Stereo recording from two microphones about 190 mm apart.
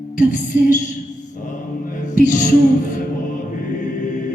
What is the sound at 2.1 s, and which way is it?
Music, 45° left (ahead or behind).